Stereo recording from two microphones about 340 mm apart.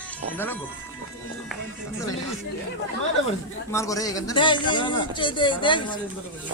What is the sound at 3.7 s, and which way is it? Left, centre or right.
Speech, centre.